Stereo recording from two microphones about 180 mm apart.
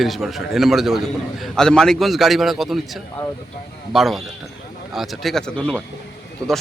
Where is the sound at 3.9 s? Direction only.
Centre (ahead or behind).